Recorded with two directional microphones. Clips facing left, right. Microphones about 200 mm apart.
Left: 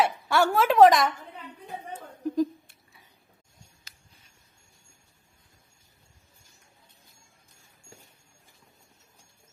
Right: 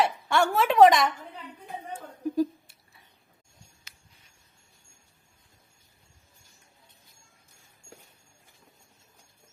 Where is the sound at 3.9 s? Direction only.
35° left (ahead or behind).